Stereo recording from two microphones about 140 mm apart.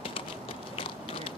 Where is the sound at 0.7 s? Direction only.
40° left (ahead or behind).